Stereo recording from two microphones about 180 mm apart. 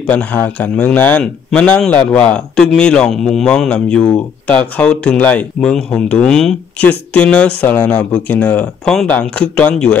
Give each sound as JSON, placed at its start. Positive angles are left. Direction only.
{"t": 0.0, "sound": "a man's voice", "side_deg": 10}